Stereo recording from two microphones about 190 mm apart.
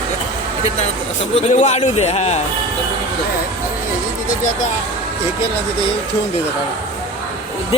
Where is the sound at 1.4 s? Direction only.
35° left (ahead or behind).